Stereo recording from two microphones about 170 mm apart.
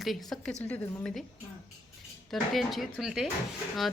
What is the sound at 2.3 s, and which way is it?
Speech, centre (ahead or behind).